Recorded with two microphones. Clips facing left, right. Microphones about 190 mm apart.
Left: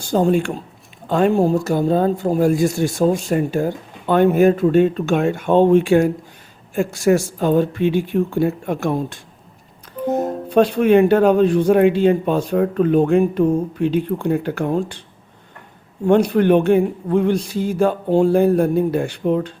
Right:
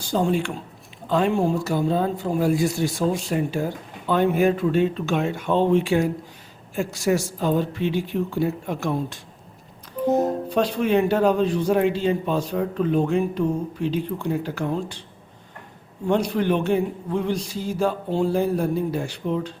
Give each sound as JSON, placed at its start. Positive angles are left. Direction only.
{"t": 0.1, "sound": "speech", "side_deg": 50}
{"t": 10.1, "sound": "speech", "side_deg": 0}
{"t": 10.5, "sound": "speech", "side_deg": 55}
{"t": 16.0, "sound": "speech", "side_deg": 55}